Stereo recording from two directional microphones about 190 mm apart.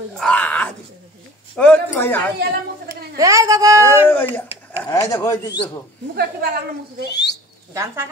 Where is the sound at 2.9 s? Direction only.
15° right (ahead or behind).